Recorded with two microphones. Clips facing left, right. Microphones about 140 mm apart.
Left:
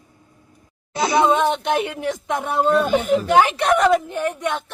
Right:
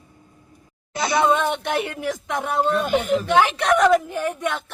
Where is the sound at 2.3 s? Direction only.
Centre (ahead or behind).